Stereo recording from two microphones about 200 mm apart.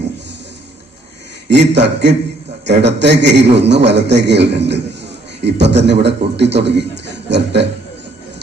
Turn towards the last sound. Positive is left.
turn(degrees=-60)  # may be behind; listen again after turning